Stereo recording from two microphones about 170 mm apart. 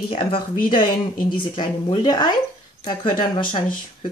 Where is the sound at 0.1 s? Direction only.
30° left (ahead or behind).